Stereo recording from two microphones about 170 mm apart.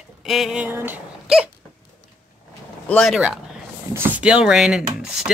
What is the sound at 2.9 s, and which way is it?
Speech, centre (ahead or behind).